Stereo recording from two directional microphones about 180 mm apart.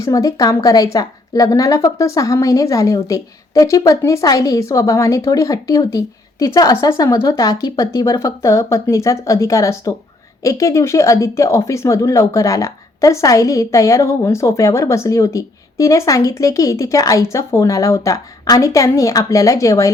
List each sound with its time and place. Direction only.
0.0 s a woman's voice: 20° left (ahead or behind)